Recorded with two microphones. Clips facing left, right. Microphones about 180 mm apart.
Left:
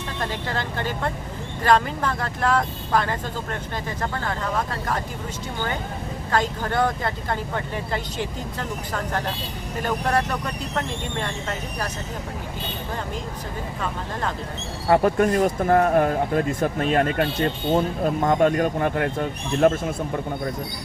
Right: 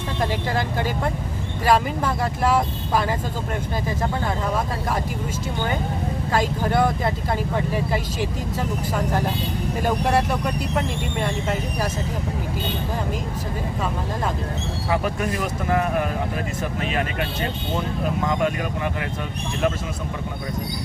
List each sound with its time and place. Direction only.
0.5 s speech: 10° right (ahead or behind)
6.3 s speech: 10° right (ahead or behind)
9.8 s speech: 10° right (ahead or behind)
14.8 s speech: 55° left (ahead or behind)